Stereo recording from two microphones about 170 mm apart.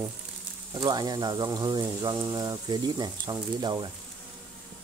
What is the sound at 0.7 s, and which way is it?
Speech, 25° right (ahead or behind).